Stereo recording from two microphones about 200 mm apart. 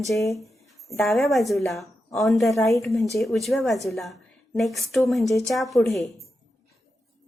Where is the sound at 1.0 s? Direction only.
Centre (ahead or behind).